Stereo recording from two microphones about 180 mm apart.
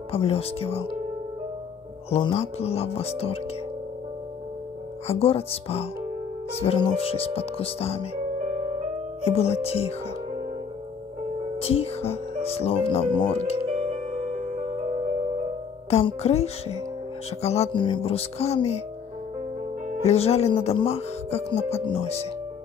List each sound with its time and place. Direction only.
0.1 s speech: 35° left (ahead or behind)
2.0 s speech: 35° left (ahead or behind)
5.0 s speech: 35° left (ahead or behind)
8.5 s music: 40° right (ahead or behind)
9.2 s speech: 35° left (ahead or behind)
11.5 s speech: 35° left (ahead or behind)
13.7 s music: 40° right (ahead or behind)
15.9 s speech: 35° left (ahead or behind)
20.0 s speech: 35° left (ahead or behind)